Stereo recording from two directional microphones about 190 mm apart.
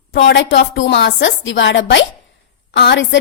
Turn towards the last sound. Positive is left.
turn(degrees=65)  # may be behind; listen again after turning